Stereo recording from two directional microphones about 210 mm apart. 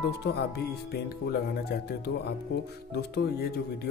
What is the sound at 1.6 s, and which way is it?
Speech, 50° left (ahead or behind).